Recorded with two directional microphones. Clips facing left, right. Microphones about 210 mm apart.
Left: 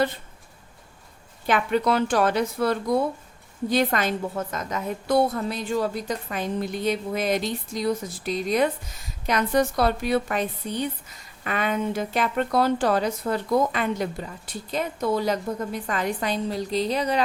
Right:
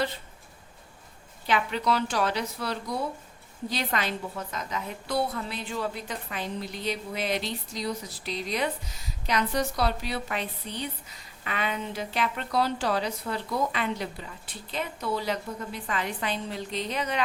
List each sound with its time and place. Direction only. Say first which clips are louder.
1.5 s a woman's voice: left 5 dB; 50° left (ahead or behind); by 17.2 s 35° left (ahead or behind)